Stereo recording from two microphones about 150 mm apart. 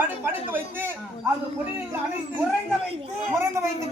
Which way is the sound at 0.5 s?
15° right (ahead or behind).